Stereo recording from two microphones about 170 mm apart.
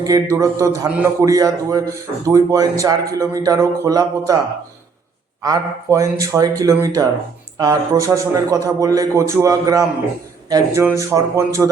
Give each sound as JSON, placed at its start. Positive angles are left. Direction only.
{"t": 0.0, "sound": "a man's voice", "side_deg": -20}
{"t": 5.4, "sound": "a man's voice", "side_deg": -20}